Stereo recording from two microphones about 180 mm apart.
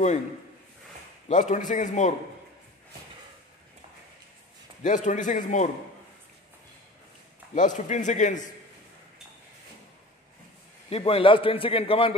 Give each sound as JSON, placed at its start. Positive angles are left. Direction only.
{"t": 1.3, "sound": "a man's voice", "side_deg": 45}
{"t": 4.8, "sound": "a man's voice", "side_deg": 45}
{"t": 7.5, "sound": "a man's voice", "side_deg": 45}
{"t": 10.9, "sound": "a man's voice", "side_deg": 30}